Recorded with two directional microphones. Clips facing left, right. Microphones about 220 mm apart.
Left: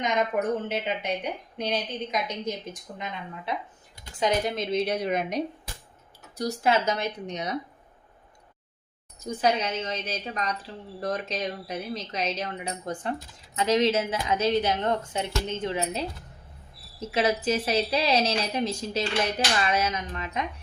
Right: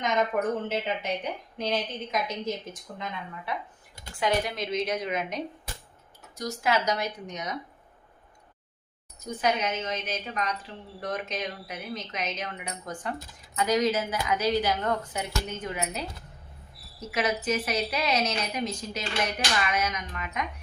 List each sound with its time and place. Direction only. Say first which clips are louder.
0.3 s a woman's voice: left 1 dB; 15° left (ahead or behind)
4.2 s a woman's voice: left 2 dB; 25° left (ahead or behind)
4.9 s speech: left 3 dB; 35° left (ahead or behind)
6.6 s a woman's voice: left 1 dB; 25° left (ahead or behind)
9.2 s a woman's voice: left 2 dB; 30° left (ahead or behind)